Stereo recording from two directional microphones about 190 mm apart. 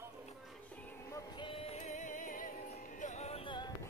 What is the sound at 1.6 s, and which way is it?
Music, 35° left (ahead or behind).